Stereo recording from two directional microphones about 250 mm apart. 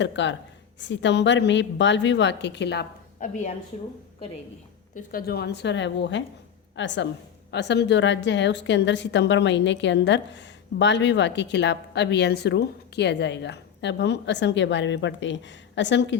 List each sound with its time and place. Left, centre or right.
0.0 s a woman's voice: left
3.7 s a woman's voice: left
4.9 s a woman's voice: left